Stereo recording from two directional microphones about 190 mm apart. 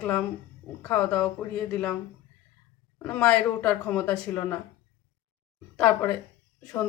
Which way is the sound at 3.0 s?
5° left (ahead or behind).